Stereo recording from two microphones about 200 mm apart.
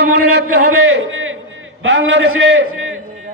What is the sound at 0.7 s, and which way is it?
A man's voice, 85° right.